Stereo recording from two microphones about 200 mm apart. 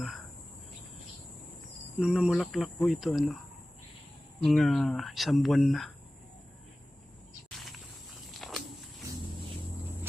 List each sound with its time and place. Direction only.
2.0 s speech: 5° right (ahead or behind)
4.4 s speech: centre (ahead or behind)
8.3 s walk: centre (ahead or behind)